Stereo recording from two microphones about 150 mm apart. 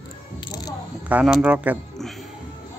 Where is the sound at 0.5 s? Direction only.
25° left (ahead or behind).